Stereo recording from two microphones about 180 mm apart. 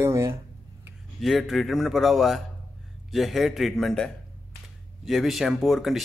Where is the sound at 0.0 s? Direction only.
15° right (ahead or behind).